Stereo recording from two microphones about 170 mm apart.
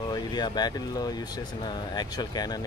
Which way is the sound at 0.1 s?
25° left (ahead or behind).